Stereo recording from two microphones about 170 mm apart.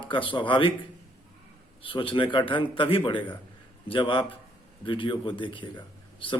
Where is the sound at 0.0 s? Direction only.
30° left (ahead or behind).